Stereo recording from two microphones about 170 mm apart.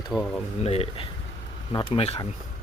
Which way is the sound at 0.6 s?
35° left (ahead or behind).